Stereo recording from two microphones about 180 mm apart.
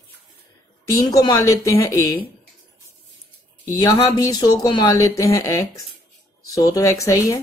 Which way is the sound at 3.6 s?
20° left (ahead or behind).